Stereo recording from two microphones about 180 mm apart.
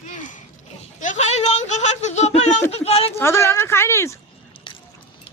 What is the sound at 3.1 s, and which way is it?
Speech, 15° left (ahead or behind).